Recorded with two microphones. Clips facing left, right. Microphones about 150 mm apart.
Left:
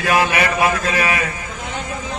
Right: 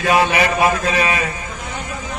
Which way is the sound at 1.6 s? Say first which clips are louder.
Left 3 dB; 20° left (ahead or behind).